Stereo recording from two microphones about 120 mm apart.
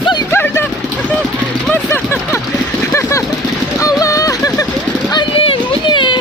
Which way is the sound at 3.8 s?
30° left (ahead or behind).